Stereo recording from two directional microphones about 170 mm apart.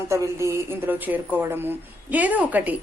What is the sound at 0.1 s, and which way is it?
A woman's voice, 15° right (ahead or behind).